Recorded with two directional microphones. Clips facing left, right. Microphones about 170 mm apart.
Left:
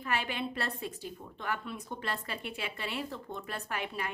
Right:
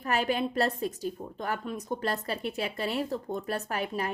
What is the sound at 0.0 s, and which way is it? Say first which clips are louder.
A woman's voice: right 6 dB; 40° right (ahead or behind).